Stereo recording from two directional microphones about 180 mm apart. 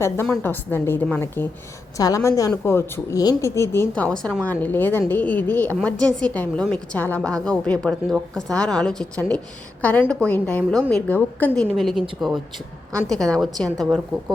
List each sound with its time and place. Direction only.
0.0 s a woman's voice: 10° left (ahead or behind)